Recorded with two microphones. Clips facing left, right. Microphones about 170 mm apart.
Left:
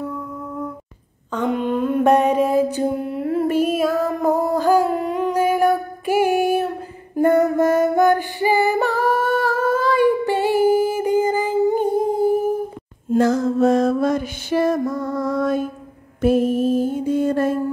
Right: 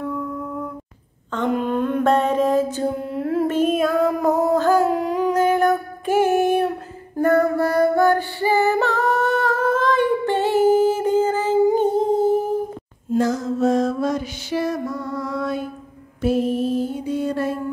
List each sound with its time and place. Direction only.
1.3 s a sound: 5° left (ahead or behind)
2.0 s mantra: 15° left (ahead or behind)
3.1 s music: centre (ahead or behind)
4.8 s a sound: centre (ahead or behind)
7.2 s female singing: 25° left (ahead or behind)
13.1 s music: 55° left (ahead or behind)
16.2 s mantra: 50° left (ahead or behind)